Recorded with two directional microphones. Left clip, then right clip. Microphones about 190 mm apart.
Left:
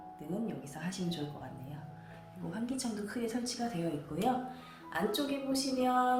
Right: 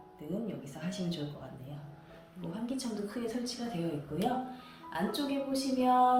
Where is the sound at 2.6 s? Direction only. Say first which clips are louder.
Right 2 dB; 10° left (ahead or behind).